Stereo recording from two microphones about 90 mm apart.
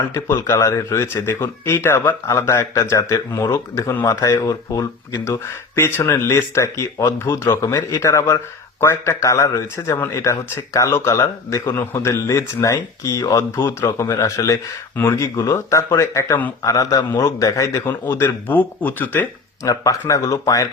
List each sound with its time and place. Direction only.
0.1 s a man's voice: 30° left (ahead or behind)
5.1 s a man's voice: 30° left (ahead or behind)
19.6 s a man's voice: 40° left (ahead or behind)